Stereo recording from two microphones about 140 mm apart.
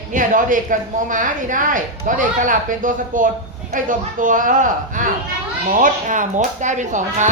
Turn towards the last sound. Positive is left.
turn(degrees=-60)  # may be behind; listen again after turning